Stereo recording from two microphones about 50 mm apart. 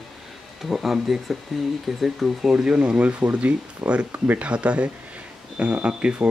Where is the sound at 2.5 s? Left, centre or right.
Centre.